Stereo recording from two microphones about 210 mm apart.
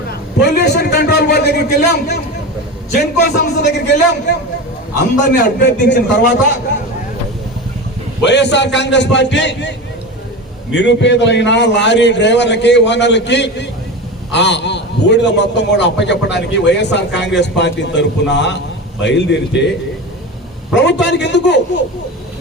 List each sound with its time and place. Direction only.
0.1 s a sound: 50° left (ahead or behind)
3.2 s a man's voice: 50° left (ahead or behind)
8.2 s a man's voice: 55° left (ahead or behind)
20.7 s a man's voice: 55° left (ahead or behind)